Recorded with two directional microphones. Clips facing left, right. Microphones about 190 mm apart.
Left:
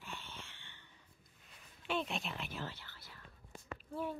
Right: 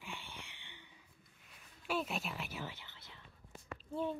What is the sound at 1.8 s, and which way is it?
Music, 5° right (ahead or behind).